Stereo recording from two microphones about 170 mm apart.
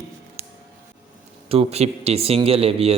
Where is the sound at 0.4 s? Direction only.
15° right (ahead or behind).